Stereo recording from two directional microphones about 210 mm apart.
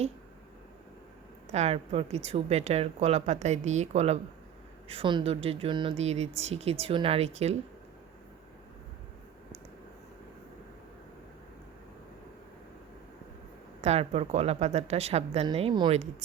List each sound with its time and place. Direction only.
1.5 s a woman's voice: 30° right (ahead or behind)
13.8 s speech: 30° right (ahead or behind)